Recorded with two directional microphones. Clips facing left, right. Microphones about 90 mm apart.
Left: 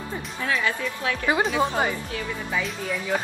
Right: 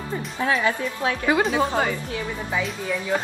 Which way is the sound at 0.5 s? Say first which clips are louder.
Right 3 dB; 30° right (ahead or behind).